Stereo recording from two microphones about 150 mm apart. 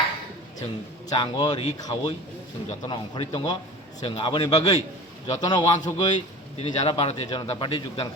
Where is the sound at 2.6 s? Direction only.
40° left (ahead or behind).